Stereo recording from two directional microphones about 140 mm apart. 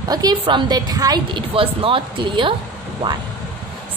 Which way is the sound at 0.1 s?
30° right (ahead or behind).